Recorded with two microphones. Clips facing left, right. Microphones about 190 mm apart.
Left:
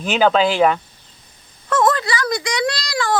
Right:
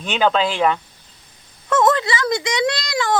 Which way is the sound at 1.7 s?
20° right (ahead or behind).